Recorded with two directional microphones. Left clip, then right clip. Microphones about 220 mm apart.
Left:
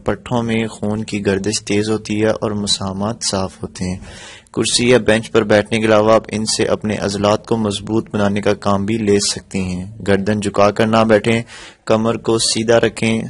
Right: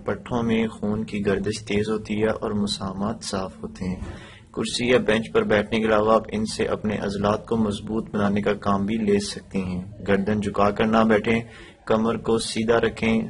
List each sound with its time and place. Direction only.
0.0 s speech: 45° left (ahead or behind)
4.6 s speech: 45° left (ahead or behind)